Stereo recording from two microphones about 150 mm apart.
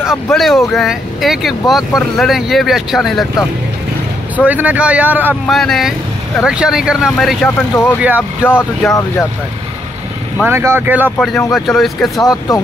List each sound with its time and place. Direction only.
0.1 s speech: centre (ahead or behind)
4.5 s speech: 10° right (ahead or behind)
5.5 s speech: centre (ahead or behind)
7.4 s speech: 15° left (ahead or behind)
8.4 s speech: 5° right (ahead or behind)
10.3 s speech: 15° right (ahead or behind)
11.1 s speech: 10° left (ahead or behind)
12.2 s speech: 20° left (ahead or behind)